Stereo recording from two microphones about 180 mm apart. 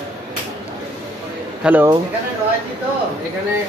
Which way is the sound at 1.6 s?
10° right (ahead or behind).